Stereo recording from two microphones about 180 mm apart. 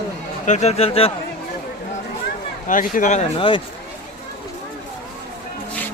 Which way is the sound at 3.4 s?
25° left (ahead or behind).